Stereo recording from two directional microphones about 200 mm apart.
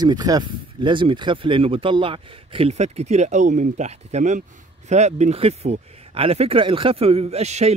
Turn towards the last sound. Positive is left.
turn(degrees=-35)  # may be behind; listen again after turning